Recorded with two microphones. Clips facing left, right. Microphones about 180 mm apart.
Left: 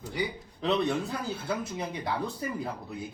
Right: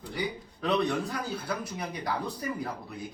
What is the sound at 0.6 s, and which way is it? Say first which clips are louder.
Speech: even; 25° left (ahead or behind).